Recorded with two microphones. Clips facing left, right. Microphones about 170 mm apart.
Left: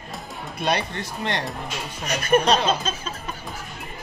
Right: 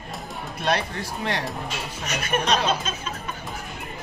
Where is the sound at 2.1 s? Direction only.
30° left (ahead or behind).